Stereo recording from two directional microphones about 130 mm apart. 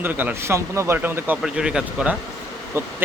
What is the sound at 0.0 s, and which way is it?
Speech, 15° right (ahead or behind).